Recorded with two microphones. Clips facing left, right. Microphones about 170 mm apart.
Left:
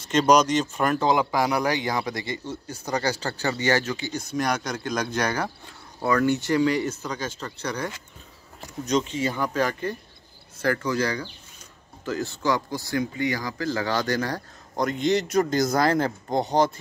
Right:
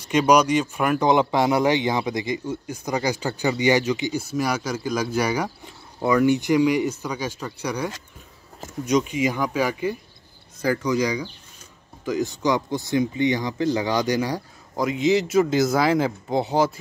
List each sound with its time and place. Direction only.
0.1 s speech: 10° right (ahead or behind)
4.2 s speech: 5° right (ahead or behind)
14.9 s speech: centre (ahead or behind)